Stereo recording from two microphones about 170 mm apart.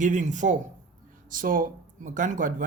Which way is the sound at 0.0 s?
45° right (ahead or behind).